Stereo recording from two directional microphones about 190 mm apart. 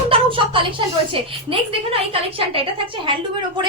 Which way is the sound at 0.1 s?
25° right (ahead or behind).